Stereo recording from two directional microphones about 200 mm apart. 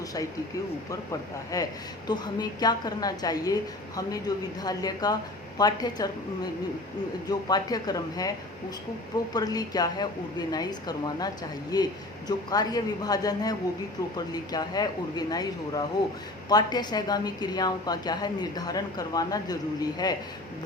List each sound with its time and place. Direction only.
1.5 s a woman's voice: 20° left (ahead or behind)